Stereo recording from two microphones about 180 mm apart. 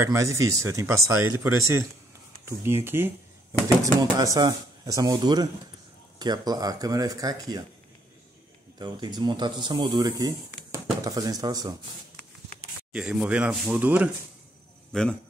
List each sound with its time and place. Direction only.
0.0 s speech: 15° right (ahead or behind)
8.7 s speech: 25° right (ahead or behind)
12.9 s speech: 5° right (ahead or behind)
14.9 s a man's voice: 5° left (ahead or behind)